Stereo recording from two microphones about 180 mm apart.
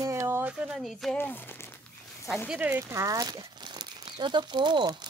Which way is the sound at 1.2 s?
10° left (ahead or behind).